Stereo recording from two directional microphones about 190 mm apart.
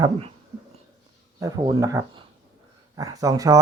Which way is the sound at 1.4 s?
20° right (ahead or behind).